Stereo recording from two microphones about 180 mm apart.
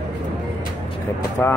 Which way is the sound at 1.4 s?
10° left (ahead or behind).